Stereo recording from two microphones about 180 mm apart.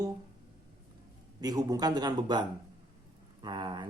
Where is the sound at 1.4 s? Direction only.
20° right (ahead or behind).